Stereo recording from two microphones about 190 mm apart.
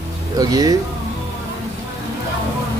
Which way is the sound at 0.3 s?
20° right (ahead or behind).